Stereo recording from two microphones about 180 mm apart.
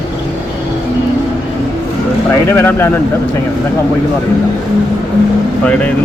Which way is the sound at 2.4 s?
15° left (ahead or behind).